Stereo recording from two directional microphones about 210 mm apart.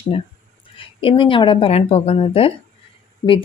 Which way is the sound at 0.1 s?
25° left (ahead or behind).